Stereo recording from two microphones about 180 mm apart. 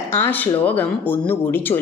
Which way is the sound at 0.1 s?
10° left (ahead or behind).